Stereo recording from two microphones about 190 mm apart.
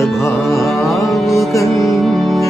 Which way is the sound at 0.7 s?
Centre (ahead or behind).